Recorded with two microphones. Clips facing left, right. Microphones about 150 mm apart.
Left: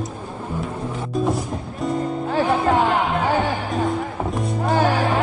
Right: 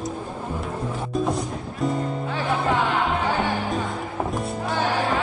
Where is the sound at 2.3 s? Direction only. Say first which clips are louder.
Left 6 dB; 40° left (ahead or behind).